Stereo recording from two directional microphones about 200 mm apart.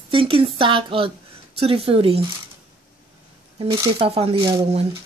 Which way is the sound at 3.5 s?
25° right (ahead or behind).